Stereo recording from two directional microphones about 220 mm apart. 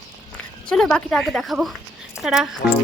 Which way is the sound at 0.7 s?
5° left (ahead or behind).